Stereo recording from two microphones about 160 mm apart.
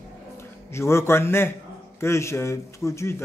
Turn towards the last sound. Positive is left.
turn(degrees=15)  # may be behind; listen again after turning